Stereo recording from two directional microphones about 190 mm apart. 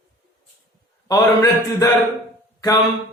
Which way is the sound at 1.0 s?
15° left (ahead or behind).